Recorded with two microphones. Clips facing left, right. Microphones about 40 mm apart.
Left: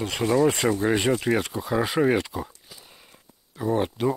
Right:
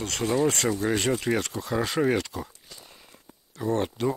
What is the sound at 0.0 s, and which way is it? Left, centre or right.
Speech, centre.